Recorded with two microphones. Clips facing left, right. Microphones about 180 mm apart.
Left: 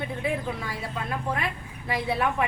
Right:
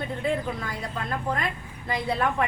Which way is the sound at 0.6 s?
5° left (ahead or behind).